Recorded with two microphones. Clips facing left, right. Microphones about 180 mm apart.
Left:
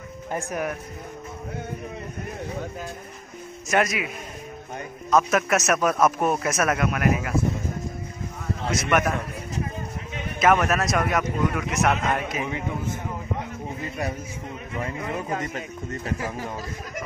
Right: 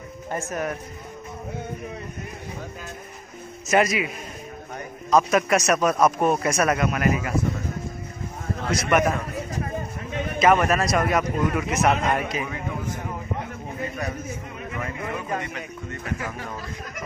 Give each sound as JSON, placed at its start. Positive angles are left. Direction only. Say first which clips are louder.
{"t": 0.3, "sound": "speech", "louder": "even", "side_deg": 15}
{"t": 3.6, "sound": "a man's voice", "louder": "right 3 dB", "side_deg": 0}
{"t": 5.1, "sound": "a man's voice", "louder": "right 1 dB", "side_deg": 0}
{"t": 8.7, "sound": "a man's voice", "louder": "right 2 dB", "side_deg": 0}
{"t": 10.4, "sound": "a man's voice", "louder": "right 1 dB", "side_deg": 0}
{"t": 12.4, "sound": "a man's voice", "louder": "left 2 dB", "side_deg": 20}
{"t": 15.5, "sound": "speech", "louder": "left 2 dB", "side_deg": 35}